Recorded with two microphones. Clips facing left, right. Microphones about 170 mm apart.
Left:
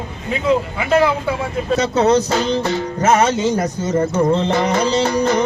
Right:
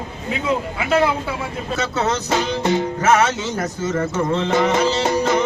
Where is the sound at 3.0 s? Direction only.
35° left (ahead or behind).